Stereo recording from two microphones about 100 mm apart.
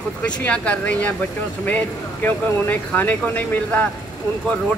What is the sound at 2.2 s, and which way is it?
Speech, 20° left (ahead or behind).